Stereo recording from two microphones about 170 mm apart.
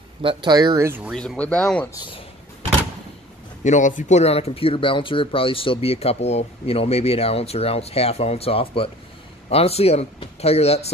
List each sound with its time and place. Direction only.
0.2 s speech: 30° right (ahead or behind); by 1.1 s 15° right (ahead or behind)
1.1 s speech: 5° left (ahead or behind)
3.6 s speech: 45° left (ahead or behind)